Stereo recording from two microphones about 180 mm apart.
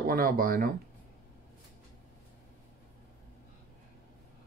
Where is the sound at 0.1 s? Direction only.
55° right (ahead or behind).